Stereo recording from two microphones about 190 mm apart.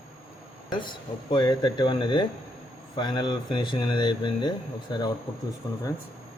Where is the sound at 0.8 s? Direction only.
25° left (ahead or behind).